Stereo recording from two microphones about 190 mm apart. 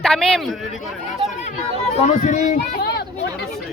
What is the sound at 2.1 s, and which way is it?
Speech, 40° left (ahead or behind).